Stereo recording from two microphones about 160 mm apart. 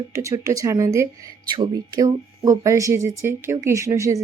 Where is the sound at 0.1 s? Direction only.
20° right (ahead or behind).